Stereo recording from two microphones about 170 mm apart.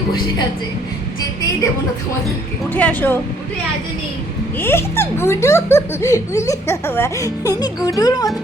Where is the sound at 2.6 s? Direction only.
10° left (ahead or behind).